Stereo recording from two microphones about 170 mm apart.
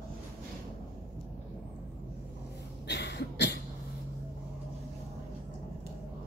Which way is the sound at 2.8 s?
85° left.